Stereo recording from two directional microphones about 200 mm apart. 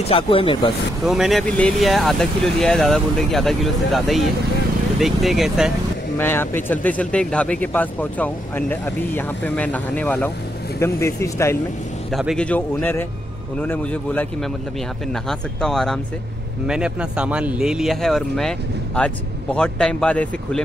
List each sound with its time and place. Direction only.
0.0 s speech: 25° left (ahead or behind)
1.0 s speech: centre (ahead or behind)
6.1 s speech: 10° left (ahead or behind)
12.1 s speech: centre (ahead or behind)
15.2 s speech: centre (ahead or behind)